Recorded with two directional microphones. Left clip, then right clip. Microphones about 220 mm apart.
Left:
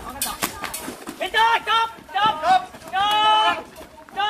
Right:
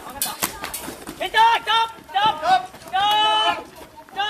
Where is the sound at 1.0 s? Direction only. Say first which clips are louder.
Right 3 dB; 15° right (ahead or behind).